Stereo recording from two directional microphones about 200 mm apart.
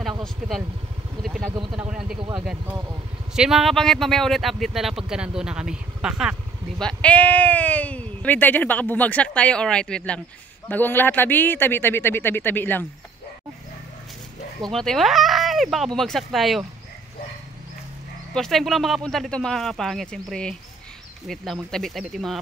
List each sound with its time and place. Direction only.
1.2 s vehicle: centre (ahead or behind)
1.5 s speech: 25° right (ahead or behind)
1.8 s speech: 5° right (ahead or behind)
2.1 s speech: 25° right (ahead or behind)
3.3 s speech: centre (ahead or behind)
14.7 s speech: centre (ahead or behind)
18.3 s speech: centre (ahead or behind)